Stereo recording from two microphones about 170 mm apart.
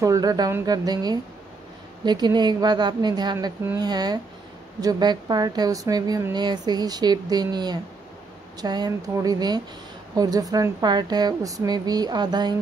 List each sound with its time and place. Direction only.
0.0 s a woman's voice: 20° right (ahead or behind)